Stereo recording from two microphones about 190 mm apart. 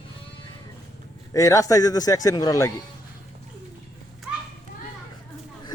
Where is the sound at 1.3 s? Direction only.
15° left (ahead or behind).